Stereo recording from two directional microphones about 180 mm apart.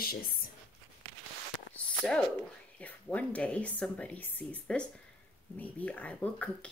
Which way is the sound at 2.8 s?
10° left (ahead or behind).